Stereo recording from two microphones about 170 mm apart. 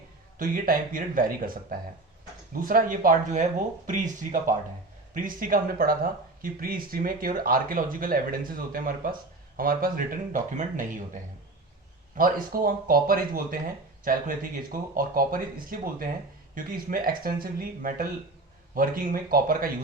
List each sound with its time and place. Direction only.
0.3 s speech: 55° right (ahead or behind)